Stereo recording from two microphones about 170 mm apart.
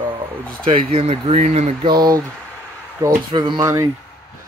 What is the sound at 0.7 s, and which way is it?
Speech, 40° right (ahead or behind).